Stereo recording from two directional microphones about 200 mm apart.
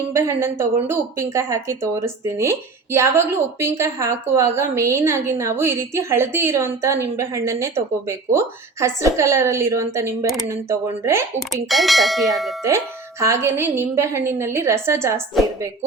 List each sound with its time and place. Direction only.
0.1 s a woman's voice: 15° right (ahead or behind)
11.7 s bell: centre (ahead or behind)
12.6 s a woman's voice: 15° right (ahead or behind)